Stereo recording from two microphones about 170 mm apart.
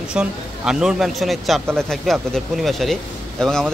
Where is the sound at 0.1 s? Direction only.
5° right (ahead or behind).